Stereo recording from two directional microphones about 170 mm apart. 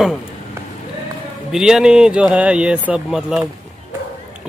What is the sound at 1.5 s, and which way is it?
Speech, 5° right (ahead or behind).